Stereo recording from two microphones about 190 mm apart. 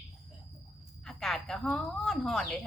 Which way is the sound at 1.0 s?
Centre (ahead or behind).